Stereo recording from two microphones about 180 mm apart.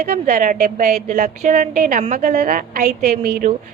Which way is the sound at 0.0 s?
50° right (ahead or behind).